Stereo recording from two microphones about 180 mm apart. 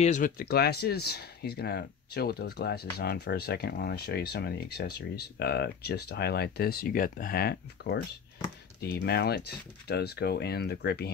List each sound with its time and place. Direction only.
0.0 s speech: 45° left (ahead or behind); by 11.1 s 65° left (ahead or behind)